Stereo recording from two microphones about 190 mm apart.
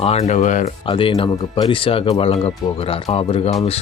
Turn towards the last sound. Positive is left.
turn(degrees=30)  # may be behind; listen again after turning